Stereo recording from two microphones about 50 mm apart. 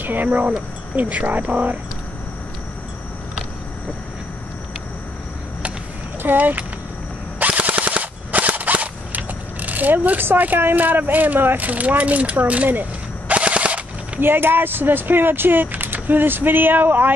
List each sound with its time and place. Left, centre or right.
0.0 s speech: right
6.2 s speech: right
7.3 s machine gun: right
10.2 s speech: right
13.3 s machine gun: right
14.2 s speech: right